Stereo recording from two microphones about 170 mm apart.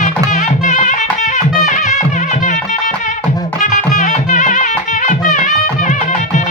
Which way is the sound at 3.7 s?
45° left (ahead or behind).